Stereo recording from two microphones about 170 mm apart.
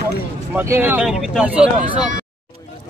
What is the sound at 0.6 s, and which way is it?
Speech, 15° right (ahead or behind).